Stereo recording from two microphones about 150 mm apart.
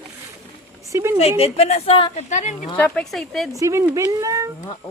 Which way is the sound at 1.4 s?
45° left (ahead or behind).